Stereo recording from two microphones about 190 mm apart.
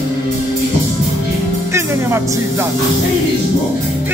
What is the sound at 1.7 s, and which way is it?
Music, 15° right (ahead or behind).